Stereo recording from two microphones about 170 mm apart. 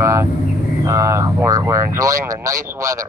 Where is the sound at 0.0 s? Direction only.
15° right (ahead or behind).